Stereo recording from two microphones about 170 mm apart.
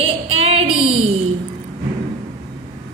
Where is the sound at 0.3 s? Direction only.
35° right (ahead or behind).